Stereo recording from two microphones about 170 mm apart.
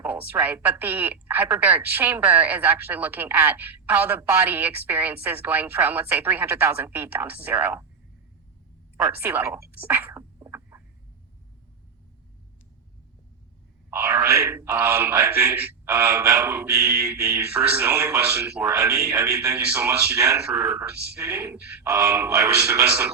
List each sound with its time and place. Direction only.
0.0 s speech: 10° right (ahead or behind)
9.1 s speech: 10° right (ahead or behind)
9.8 s a sound: 10° right (ahead or behind)
13.9 s speech: 15° right (ahead or behind)